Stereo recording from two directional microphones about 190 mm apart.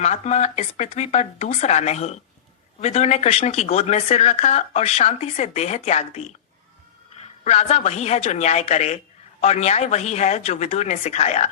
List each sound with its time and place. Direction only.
0.0 s speech: 35° left (ahead or behind)
7.4 s speech: 35° left (ahead or behind)